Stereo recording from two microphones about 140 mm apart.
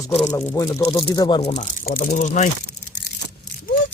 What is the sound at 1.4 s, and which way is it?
Speech, 60° left (ahead or behind).